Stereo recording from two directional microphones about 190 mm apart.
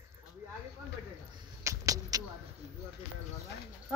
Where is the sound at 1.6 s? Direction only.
20° right (ahead or behind).